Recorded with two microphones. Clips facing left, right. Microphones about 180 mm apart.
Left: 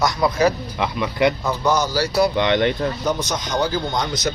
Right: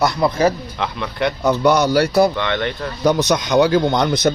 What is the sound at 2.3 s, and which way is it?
Speech, 20° left (ahead or behind).